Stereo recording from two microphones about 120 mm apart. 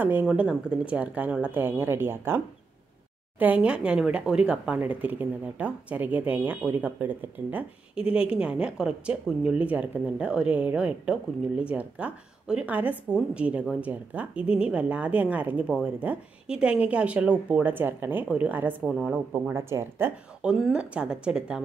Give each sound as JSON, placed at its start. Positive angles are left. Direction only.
{"t": 0.0, "sound": "speech", "side_deg": -15}
{"t": 18.9, "sound": "a woman's voice", "side_deg": -5}
{"t": 19.5, "sound": "speech", "side_deg": -20}
{"t": 20.4, "sound": "speech", "side_deg": -5}